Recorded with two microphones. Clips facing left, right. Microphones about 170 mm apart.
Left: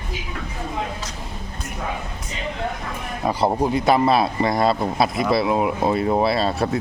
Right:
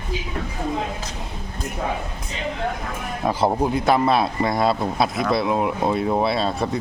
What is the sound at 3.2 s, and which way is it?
A man's voice, centre (ahead or behind).